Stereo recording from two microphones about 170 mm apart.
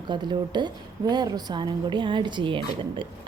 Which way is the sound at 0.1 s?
25° right (ahead or behind).